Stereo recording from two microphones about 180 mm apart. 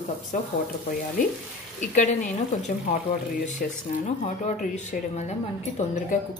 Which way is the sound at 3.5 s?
45° left (ahead or behind).